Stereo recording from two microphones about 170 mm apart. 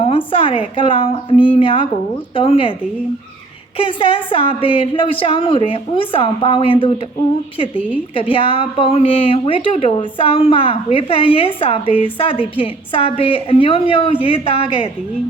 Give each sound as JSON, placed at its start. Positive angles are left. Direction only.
{"t": 0.0, "sound": "speech", "side_deg": 30}
{"t": 3.8, "sound": "speech", "side_deg": 30}
{"t": 8.1, "sound": "speech", "side_deg": 30}